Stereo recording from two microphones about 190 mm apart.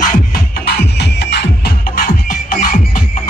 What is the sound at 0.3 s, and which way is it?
Music, 60° left (ahead or behind).